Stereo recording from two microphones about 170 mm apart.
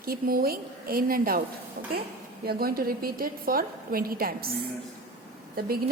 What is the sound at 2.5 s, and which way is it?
A woman's voice, 60° right (ahead or behind).